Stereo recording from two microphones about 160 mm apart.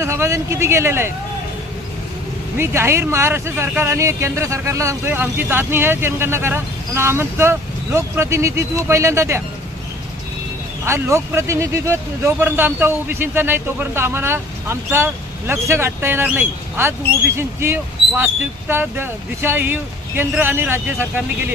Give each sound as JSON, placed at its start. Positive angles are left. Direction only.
{"t": 0.0, "sound": "speech", "side_deg": -15}
{"t": 2.5, "sound": "speech", "side_deg": -15}
{"t": 10.9, "sound": "speech", "side_deg": -15}